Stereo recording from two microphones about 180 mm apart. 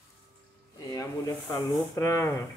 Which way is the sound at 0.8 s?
20° left (ahead or behind).